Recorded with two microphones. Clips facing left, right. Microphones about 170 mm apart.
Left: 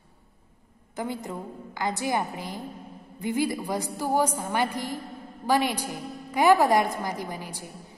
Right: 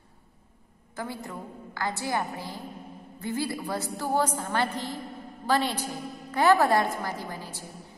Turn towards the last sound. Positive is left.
turn(degrees=15)  # may be behind; listen again after turning